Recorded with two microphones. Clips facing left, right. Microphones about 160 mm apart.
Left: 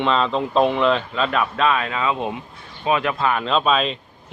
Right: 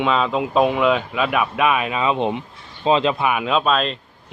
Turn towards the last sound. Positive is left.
turn(degrees=0)  # may be behind; listen again after turning